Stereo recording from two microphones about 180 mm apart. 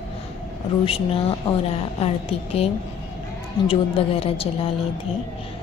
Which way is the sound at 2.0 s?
35° left (ahead or behind).